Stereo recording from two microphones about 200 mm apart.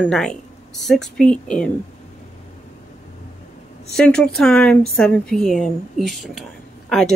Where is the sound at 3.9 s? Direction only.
5° left (ahead or behind).